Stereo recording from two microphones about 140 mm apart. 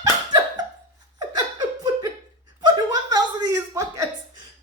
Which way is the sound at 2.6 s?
30° right (ahead or behind).